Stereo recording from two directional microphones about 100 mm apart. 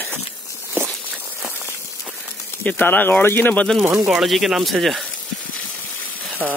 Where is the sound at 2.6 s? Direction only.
15° left (ahead or behind).